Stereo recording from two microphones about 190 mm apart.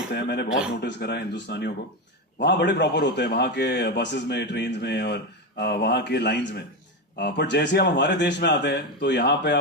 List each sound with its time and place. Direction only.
0.1 s a man's voice: 60° left (ahead or behind)